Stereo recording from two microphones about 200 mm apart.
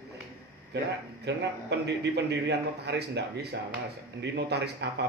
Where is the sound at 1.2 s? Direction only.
60° right (ahead or behind).